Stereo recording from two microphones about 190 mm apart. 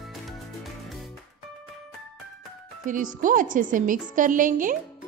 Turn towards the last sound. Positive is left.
turn(degrees=-45)  # may be behind; listen again after turning